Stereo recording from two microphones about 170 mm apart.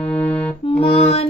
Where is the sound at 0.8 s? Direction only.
35° left (ahead or behind).